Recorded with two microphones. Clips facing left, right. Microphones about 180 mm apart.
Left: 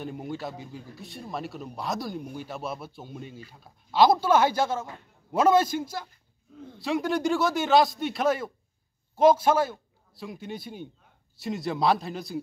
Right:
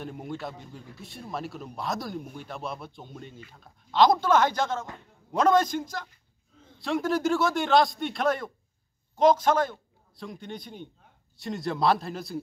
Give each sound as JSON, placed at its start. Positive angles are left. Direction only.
{"t": 0.0, "sound": "a man's voice", "side_deg": 0}